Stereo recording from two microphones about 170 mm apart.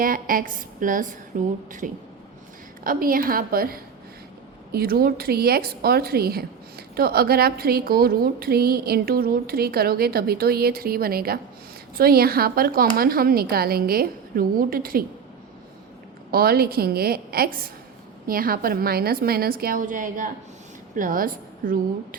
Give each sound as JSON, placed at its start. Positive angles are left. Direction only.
{"t": 0.0, "sound": "a woman's voice", "side_deg": -55}
{"t": 16.3, "sound": "a woman's voice", "side_deg": -60}